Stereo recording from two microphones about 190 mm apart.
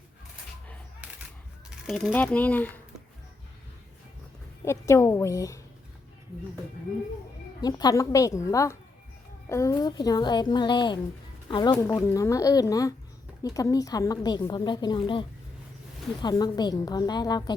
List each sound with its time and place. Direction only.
1.9 s speech: centre (ahead or behind)
4.6 s speech: 15° left (ahead or behind)
7.6 s a woman's voice: 20° left (ahead or behind)